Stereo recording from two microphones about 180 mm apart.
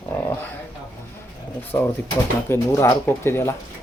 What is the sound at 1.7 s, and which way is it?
Speech, 15° left (ahead or behind).